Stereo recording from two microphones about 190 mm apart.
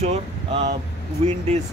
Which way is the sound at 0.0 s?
35° right (ahead or behind).